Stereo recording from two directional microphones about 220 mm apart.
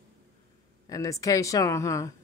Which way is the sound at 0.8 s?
15° left (ahead or behind).